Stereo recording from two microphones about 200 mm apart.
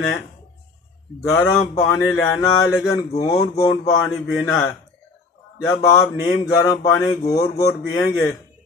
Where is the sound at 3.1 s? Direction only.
30° left (ahead or behind).